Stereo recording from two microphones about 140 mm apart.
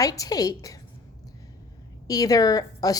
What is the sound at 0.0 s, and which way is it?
Speech, 25° left (ahead or behind).